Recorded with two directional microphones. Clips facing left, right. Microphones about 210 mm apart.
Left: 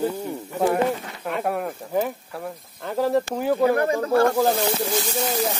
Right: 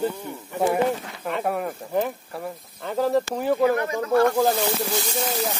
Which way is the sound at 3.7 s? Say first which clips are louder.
Left 1 dB; 30° left (ahead or behind).